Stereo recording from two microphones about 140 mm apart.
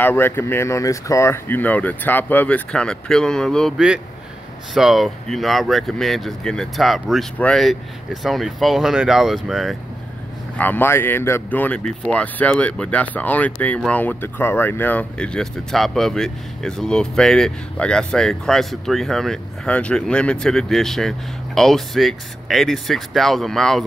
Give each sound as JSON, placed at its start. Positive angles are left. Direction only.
{"t": 0.0, "sound": "speech", "side_deg": 15}
{"t": 10.6, "sound": "speech", "side_deg": 15}